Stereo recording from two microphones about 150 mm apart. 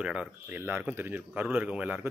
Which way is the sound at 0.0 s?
5° right (ahead or behind).